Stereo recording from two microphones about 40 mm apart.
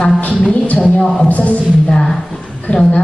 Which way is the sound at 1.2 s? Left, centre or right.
Left.